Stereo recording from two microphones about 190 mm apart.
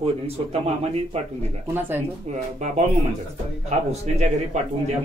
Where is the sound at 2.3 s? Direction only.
40° right (ahead or behind).